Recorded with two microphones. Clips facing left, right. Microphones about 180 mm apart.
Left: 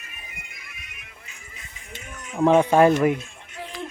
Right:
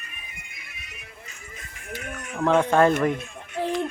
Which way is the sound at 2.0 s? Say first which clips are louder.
Right 4 dB; 60° right (ahead or behind).